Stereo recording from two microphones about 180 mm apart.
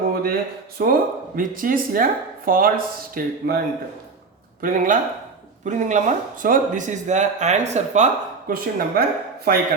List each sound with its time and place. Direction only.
0.1 s a sound: 55° right (ahead or behind)
0.8 s speech: 55° right (ahead or behind)
4.6 s speech: 50° right (ahead or behind)